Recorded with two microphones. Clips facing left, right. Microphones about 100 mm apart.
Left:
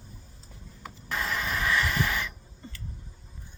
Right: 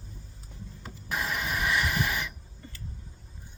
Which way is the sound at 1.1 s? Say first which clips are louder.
Left 1 dB; 15° right (ahead or behind).